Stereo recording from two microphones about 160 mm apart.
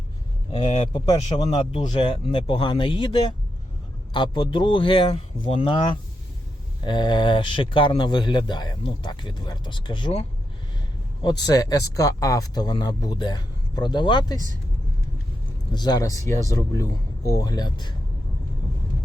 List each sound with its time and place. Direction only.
0.5 s speech: 35° left (ahead or behind)
15.7 s speech: 25° left (ahead or behind)